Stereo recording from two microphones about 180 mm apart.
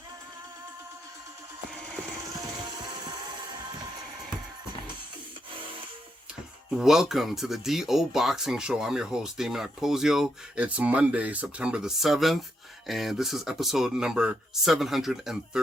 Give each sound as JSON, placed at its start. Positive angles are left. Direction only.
{"t": 2.3, "sound": "music", "side_deg": -20}
{"t": 6.7, "sound": "speech", "side_deg": -5}